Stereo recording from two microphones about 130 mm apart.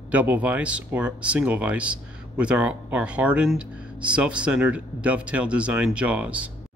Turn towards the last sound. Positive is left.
turn(degrees=-10)  # may be behind; listen again after turning